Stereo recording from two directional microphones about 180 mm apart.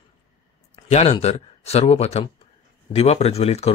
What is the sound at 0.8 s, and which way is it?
Speech, 35° left (ahead or behind).